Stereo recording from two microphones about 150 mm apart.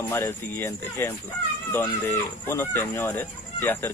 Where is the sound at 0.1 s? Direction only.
15° left (ahead or behind).